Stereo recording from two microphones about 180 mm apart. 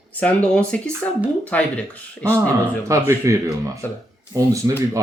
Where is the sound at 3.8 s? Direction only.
10° left (ahead or behind).